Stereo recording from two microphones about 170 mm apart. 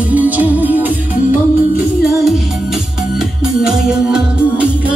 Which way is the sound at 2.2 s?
Centre (ahead or behind).